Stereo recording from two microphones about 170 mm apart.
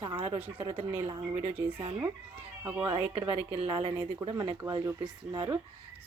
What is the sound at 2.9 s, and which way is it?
Speech, 25° right (ahead or behind).